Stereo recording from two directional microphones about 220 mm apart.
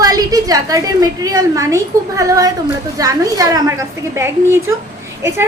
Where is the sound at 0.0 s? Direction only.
15° right (ahead or behind).